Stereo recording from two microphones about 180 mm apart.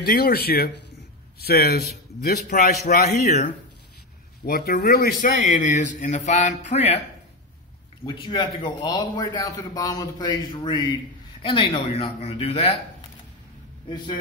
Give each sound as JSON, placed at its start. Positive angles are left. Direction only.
{"t": 0.0, "sound": "a man's voice", "side_deg": 55}
{"t": 4.5, "sound": "a man's voice", "side_deg": 60}
{"t": 8.0, "sound": "a man's voice", "side_deg": 25}